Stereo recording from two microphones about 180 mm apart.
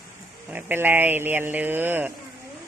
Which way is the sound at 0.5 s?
10° right (ahead or behind).